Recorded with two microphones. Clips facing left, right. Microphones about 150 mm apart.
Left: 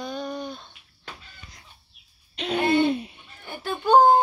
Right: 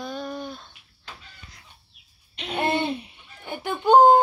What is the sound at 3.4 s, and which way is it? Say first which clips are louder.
Speech: right 2 dB; 15° right (ahead or behind).